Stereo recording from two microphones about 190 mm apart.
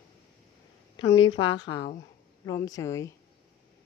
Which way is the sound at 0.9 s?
25° left (ahead or behind).